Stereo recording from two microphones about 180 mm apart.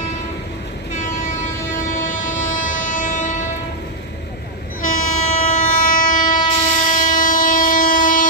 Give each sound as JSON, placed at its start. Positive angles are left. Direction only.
{"t": 0.9, "sound": "train", "side_deg": 45}
{"t": 4.8, "sound": "train", "side_deg": 40}